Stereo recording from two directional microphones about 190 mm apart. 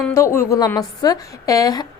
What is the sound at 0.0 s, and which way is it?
A woman's voice, 15° left (ahead or behind).